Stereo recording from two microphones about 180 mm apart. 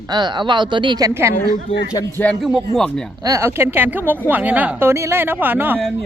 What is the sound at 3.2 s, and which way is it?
Speech, 15° right (ahead or behind).